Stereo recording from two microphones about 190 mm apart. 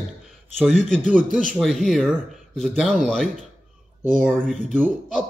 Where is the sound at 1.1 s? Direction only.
45° right (ahead or behind).